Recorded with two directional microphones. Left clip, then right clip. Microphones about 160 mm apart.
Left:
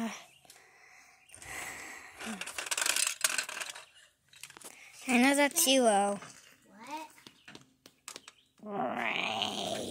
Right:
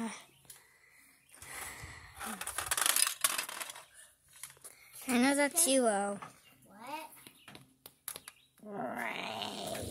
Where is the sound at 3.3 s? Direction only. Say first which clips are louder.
Left 3 dB; 25° left (ahead or behind).